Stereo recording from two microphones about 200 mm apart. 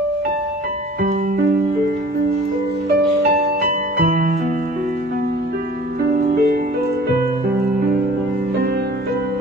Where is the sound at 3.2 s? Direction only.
40° right (ahead or behind).